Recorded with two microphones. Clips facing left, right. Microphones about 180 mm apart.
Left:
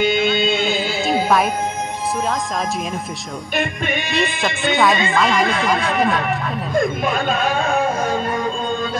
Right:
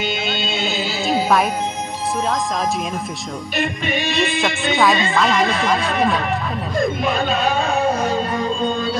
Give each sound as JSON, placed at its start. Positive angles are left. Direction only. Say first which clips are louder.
{"t": 0.0, "sound": "music", "louder": "left 7 dB", "side_deg": 50}
{"t": 0.7, "sound": "music", "louder": "left 2 dB", "side_deg": 0}
{"t": 4.1, "sound": "speech", "louder": "right 2 dB", "side_deg": 0}